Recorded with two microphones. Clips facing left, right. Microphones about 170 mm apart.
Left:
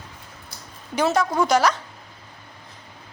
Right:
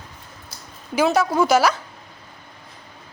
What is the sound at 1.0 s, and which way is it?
Speech, 5° right (ahead or behind).